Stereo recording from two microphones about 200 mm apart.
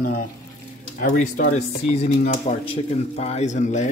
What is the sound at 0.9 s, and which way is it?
Speech, 40° left (ahead or behind).